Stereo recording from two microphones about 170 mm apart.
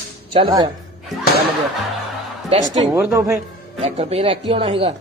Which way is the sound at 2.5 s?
35° right (ahead or behind).